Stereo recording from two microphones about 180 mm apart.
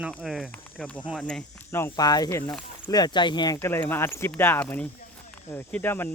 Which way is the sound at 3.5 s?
15° left (ahead or behind).